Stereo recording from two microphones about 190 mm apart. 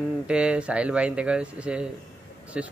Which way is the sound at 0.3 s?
5° right (ahead or behind).